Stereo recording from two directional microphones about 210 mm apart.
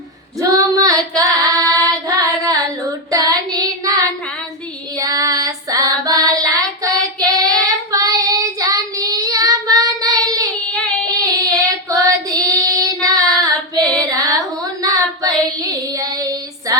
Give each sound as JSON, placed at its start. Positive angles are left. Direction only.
{"t": 0.3, "sound": "female singing", "side_deg": -15}
{"t": 2.0, "sound": "carnatic music", "side_deg": -15}
{"t": 3.1, "sound": "child singing", "side_deg": -15}
{"t": 4.9, "sound": "female singing", "side_deg": -15}
{"t": 6.4, "sound": "child singing", "side_deg": -15}